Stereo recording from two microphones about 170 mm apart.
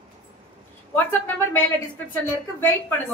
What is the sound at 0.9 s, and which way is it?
Speech, 10° left (ahead or behind).